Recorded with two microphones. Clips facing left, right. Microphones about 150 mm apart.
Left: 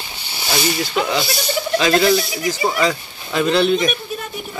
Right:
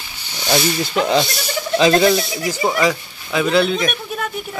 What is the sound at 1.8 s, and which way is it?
Speech, 25° right (ahead or behind).